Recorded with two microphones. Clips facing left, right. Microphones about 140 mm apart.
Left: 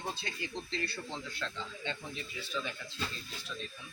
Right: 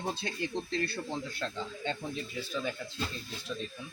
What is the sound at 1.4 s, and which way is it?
Speech, 40° right (ahead or behind).